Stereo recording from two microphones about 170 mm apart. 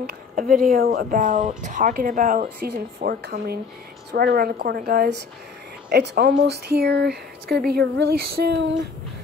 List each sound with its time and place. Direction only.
0.0 s speech: 55° right (ahead or behind)
5.9 s speech: 70° right (ahead or behind)